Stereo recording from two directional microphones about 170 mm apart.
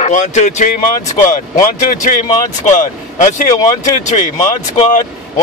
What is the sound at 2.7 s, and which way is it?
Speech, 45° left (ahead or behind).